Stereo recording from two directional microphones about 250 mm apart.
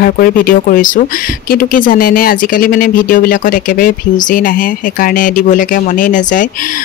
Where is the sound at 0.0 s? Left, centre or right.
Left.